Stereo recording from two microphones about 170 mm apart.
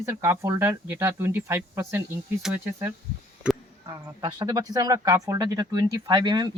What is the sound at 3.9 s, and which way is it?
Speech, 25° right (ahead or behind).